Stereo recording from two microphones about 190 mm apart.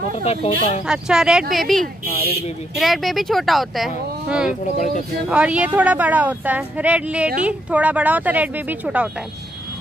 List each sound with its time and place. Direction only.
0.2 s speech: 35° left (ahead or behind)
0.8 s speech: 5° right (ahead or behind)
2.0 s speech: 55° left (ahead or behind)
2.7 s speech: centre (ahead or behind)
4.5 s speech: 40° left (ahead or behind)
5.3 s speech: 5° right (ahead or behind)